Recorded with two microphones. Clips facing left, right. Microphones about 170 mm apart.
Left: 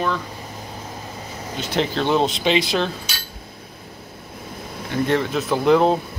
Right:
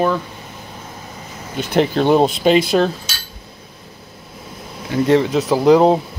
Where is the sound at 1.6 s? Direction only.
50° right (ahead or behind).